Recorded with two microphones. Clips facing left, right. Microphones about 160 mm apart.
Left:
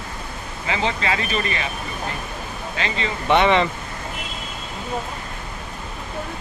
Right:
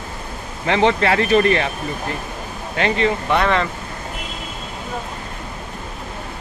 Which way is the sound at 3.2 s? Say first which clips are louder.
Left 6 dB; centre (ahead or behind).